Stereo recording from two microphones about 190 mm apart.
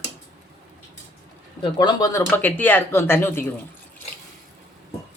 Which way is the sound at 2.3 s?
10° left (ahead or behind).